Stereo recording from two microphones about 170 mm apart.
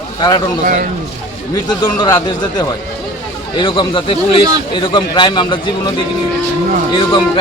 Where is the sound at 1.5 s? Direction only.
20° left (ahead or behind).